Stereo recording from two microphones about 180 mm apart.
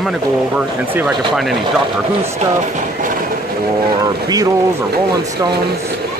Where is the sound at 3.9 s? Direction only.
20° right (ahead or behind).